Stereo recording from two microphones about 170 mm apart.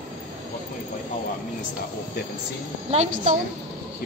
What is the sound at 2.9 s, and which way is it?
Speech, 40° right (ahead or behind).